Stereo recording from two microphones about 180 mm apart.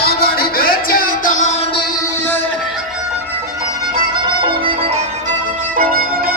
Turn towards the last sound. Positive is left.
turn(degrees=-30)  # may be behind; listen again after turning